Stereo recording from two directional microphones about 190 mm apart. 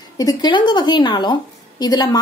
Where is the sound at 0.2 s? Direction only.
20° left (ahead or behind).